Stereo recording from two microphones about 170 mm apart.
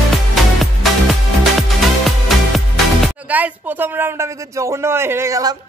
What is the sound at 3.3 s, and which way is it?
Speech, 10° right (ahead or behind).